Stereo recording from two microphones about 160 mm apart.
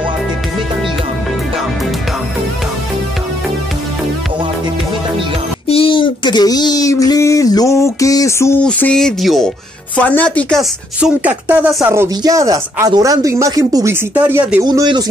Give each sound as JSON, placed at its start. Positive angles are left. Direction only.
{"t": 5.7, "sound": "speech", "side_deg": 35}
{"t": 11.0, "sound": "speech", "side_deg": -10}
{"t": 14.1, "sound": "speech", "side_deg": -10}
{"t": 14.6, "sound": "speech", "side_deg": -25}